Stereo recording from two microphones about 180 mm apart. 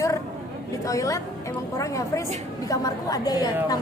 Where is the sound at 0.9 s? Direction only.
20° left (ahead or behind).